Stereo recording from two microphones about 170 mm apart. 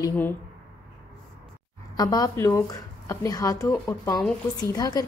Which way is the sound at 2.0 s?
20° left (ahead or behind).